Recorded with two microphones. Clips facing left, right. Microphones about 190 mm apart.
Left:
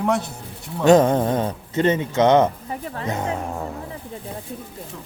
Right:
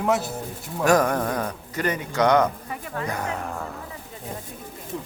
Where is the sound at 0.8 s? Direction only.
25° left (ahead or behind).